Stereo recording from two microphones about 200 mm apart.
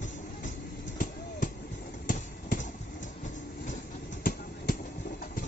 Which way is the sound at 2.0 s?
40° left (ahead or behind).